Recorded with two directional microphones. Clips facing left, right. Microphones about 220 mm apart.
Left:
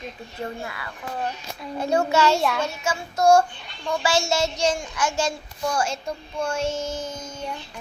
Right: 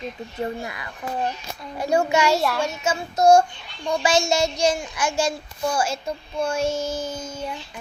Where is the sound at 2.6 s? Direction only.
20° right (ahead or behind).